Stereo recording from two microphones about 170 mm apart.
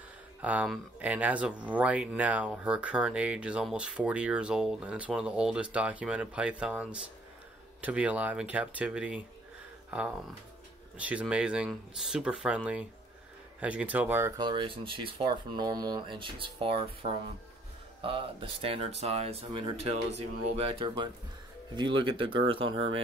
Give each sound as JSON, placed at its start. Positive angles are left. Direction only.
{"t": 0.4, "sound": "speech", "side_deg": -10}
{"t": 11.0, "sound": "speech", "side_deg": -5}
{"t": 14.4, "sound": "speech", "side_deg": -30}